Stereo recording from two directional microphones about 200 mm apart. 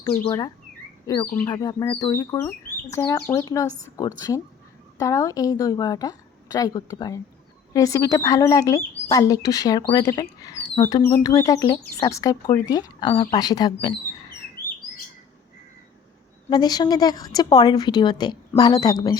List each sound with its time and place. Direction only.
0.3 s a woman's voice: 20° left (ahead or behind)
3.7 s a woman's voice: 75° right (ahead or behind)
3.9 s a woman's voice: 15° left (ahead or behind)
16.5 s a woman's voice: 20° left (ahead or behind)